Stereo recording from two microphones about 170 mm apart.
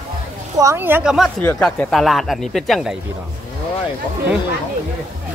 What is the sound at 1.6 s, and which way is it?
Speech, 5° left (ahead or behind).